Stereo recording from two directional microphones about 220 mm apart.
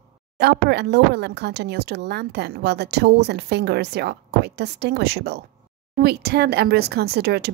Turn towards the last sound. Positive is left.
turn(degrees=-45)  # may be behind; listen again after turning